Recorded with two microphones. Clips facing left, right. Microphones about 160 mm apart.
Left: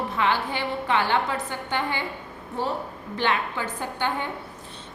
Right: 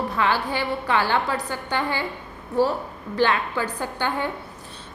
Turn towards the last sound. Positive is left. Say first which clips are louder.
# right 2 dB
turn(degrees=25)  # may be behind; listen again after turning